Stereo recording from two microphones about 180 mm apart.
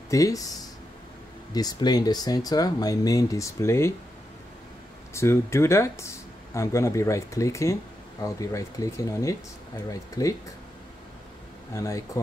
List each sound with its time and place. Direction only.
0.1 s speech: 20° left (ahead or behind)
5.1 s speech: 15° left (ahead or behind)
11.7 s speech: 15° left (ahead or behind)